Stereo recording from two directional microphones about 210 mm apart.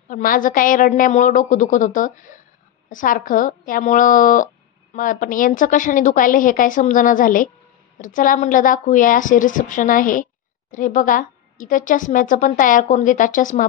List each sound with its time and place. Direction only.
0.1 s a woman's voice: 40° left (ahead or behind)